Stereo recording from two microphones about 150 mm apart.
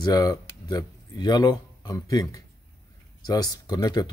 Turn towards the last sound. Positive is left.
turn(degrees=25)  # may be behind; listen again after turning